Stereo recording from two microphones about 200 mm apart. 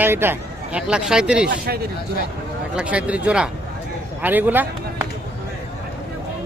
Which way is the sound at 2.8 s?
5° right (ahead or behind).